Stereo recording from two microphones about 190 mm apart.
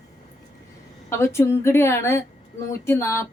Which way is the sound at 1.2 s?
15° left (ahead or behind).